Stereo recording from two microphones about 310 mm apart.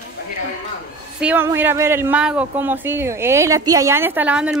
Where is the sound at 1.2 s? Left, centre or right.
Centre.